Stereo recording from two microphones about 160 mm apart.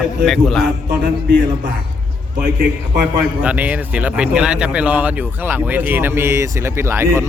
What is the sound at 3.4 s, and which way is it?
Speech, 10° right (ahead or behind).